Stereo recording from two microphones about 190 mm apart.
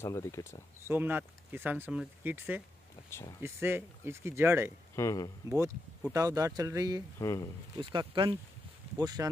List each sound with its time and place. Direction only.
0.0 s speech: 15° left (ahead or behind)
0.8 s speech: 10° right (ahead or behind)
3.1 s speech: 15° left (ahead or behind)
3.4 s speech: 15° right (ahead or behind)
4.9 s speech: 15° left (ahead or behind)
6.1 s speech: 15° right (ahead or behind)
7.2 s speech: 20° left (ahead or behind)
7.7 s speech: 25° right (ahead or behind)